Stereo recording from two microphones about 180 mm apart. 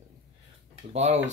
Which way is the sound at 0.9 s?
40° right (ahead or behind).